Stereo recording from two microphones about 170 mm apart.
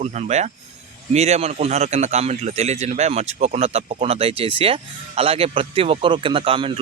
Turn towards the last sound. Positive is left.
turn(degrees=-35)  # may be behind; listen again after turning